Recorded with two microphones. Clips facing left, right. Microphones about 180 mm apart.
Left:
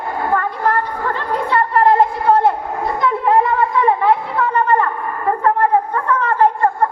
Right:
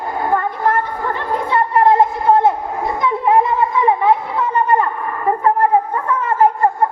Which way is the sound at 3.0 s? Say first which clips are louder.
Even; 20° right (ahead or behind).